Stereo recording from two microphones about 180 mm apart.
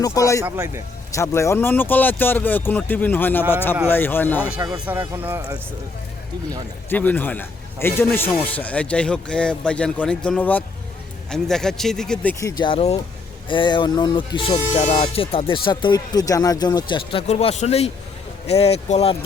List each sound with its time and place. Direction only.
0.0 s a man's voice: 20° left (ahead or behind)
0.4 s speech: 15° right (ahead or behind)
1.1 s a man's voice: 15° left (ahead or behind)
4.9 s speech: 10° right (ahead or behind)
6.9 s a man's voice: 10° left (ahead or behind); by 14.6 s 25° left (ahead or behind)
14.8 s speech: 40° left (ahead or behind)